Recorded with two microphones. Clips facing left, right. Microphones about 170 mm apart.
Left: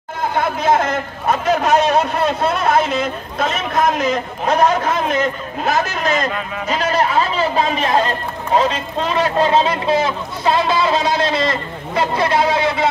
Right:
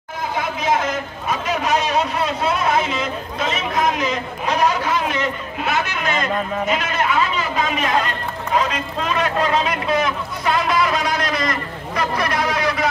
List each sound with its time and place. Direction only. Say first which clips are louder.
0.4 s a man's voice: left 4 dB; 60° left (ahead or behind); by 12.8 s 25° left (ahead or behind)